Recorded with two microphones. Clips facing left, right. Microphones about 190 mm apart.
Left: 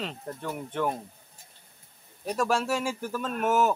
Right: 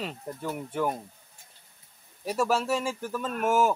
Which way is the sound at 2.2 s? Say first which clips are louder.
Even; 5° right (ahead or behind).